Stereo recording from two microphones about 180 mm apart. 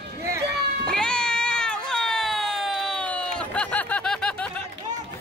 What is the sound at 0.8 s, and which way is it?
Cat, 5° left (ahead or behind).